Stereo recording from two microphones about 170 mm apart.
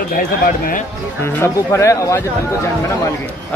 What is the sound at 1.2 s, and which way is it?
Speech, 15° left (ahead or behind).